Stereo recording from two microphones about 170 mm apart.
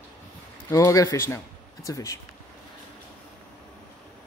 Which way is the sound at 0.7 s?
20° left (ahead or behind).